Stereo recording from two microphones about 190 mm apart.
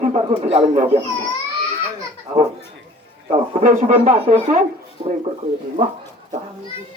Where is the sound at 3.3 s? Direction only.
35° right (ahead or behind).